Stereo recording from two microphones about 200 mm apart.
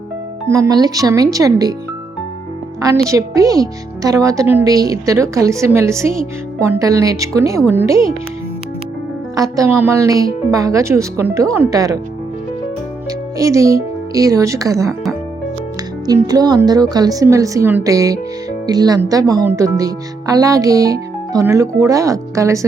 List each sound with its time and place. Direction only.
0.4 s a woman's voice: 15° right (ahead or behind)
2.8 s a woman's voice: 15° right (ahead or behind)
9.3 s a woman's voice: 15° right (ahead or behind)
13.1 s speech: 15° right (ahead or behind)
16.0 s a woman's voice: 20° right (ahead or behind)